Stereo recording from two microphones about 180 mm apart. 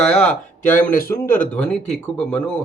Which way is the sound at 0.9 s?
55° left (ahead or behind).